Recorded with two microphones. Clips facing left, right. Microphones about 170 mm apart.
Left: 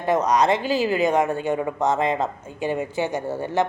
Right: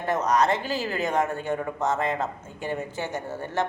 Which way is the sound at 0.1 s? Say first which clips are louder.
Left 4 dB; 15° left (ahead or behind).